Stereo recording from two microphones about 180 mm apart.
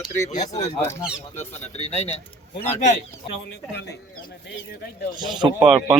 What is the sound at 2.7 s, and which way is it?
Speech, 40° left (ahead or behind).